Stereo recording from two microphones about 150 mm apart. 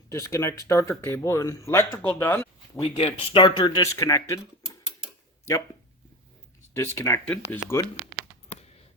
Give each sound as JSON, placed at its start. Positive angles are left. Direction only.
{"t": 0.1, "sound": "speech", "side_deg": 20}
{"t": 3.0, "sound": "speech", "side_deg": 35}
{"t": 6.7, "sound": "speech", "side_deg": 15}